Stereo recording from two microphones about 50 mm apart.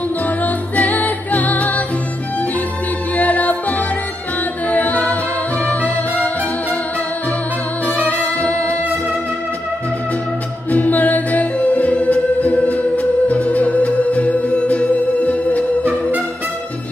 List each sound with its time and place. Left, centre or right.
0.4 s music: left
3.2 s music: left
7.8 s music: left
10.7 s music: left
15.2 s music: left